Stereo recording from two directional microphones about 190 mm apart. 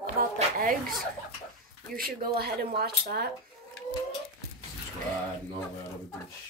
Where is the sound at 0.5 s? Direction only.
50° right (ahead or behind).